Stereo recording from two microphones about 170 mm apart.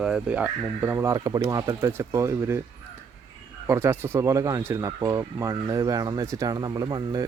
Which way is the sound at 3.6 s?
15° right (ahead or behind).